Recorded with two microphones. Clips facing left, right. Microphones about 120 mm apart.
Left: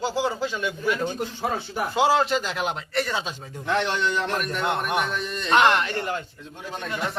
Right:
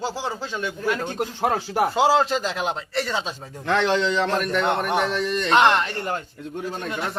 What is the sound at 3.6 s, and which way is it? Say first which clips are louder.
Speech: right 4 dB; 90° right.